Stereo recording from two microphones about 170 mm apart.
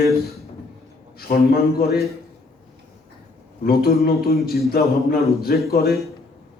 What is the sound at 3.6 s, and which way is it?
A man's voice, 60° left (ahead or behind).